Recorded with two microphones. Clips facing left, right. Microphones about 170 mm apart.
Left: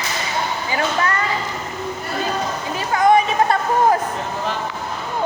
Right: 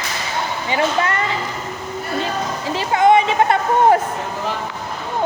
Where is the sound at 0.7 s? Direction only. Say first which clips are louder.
Right 3 dB; 25° right (ahead or behind).